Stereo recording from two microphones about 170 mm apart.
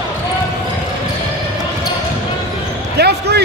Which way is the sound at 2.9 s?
70° right (ahead or behind).